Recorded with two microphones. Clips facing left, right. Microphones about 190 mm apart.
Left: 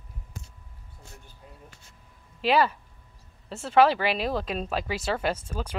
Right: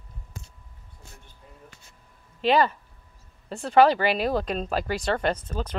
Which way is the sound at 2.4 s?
5° left (ahead or behind).